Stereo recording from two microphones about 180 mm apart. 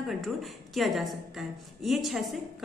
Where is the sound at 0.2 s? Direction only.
Centre (ahead or behind).